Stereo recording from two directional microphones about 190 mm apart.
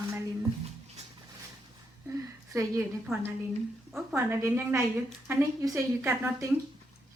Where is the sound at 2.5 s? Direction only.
15° right (ahead or behind).